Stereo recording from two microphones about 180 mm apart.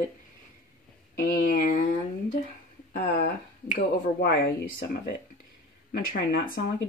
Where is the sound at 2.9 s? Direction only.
50° left (ahead or behind).